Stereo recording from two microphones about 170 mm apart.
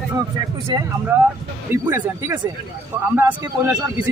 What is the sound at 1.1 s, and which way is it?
A man's voice, 15° right (ahead or behind).